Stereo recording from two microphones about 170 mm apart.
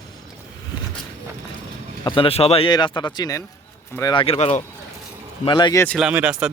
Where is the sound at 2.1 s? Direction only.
30° left (ahead or behind).